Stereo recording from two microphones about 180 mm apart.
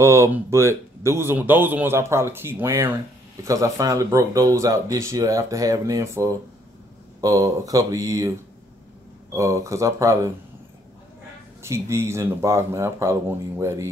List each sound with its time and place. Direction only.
0.0 s a man's voice: 15° right (ahead or behind)
9.3 s a man's voice: 15° right (ahead or behind)
11.6 s a man's voice: 15° right (ahead or behind)